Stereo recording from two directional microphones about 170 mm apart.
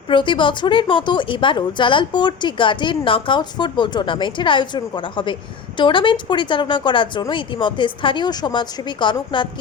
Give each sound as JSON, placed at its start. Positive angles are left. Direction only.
{"t": 0.1, "sound": "a woman's voice", "side_deg": 30}